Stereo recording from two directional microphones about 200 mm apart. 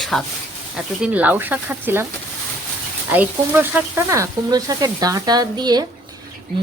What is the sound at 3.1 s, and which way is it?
A woman's voice, 10° right (ahead or behind).